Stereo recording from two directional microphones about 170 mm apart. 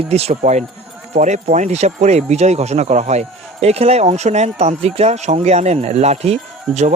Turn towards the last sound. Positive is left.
turn(degrees=-40)  # may be behind; listen again after turning